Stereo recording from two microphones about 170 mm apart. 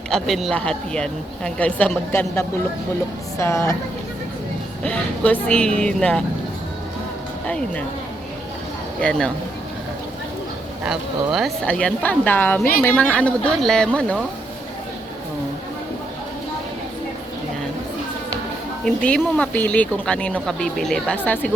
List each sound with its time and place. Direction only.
0.1 s speech: centre (ahead or behind); by 3.7 s 15° left (ahead or behind)
4.8 s speech: 10° left (ahead or behind)
7.4 s speech: 5° left (ahead or behind)
9.0 s speech: 5° left (ahead or behind)
10.8 s speech: centre (ahead or behind)
18.9 s speech: 5° left (ahead or behind)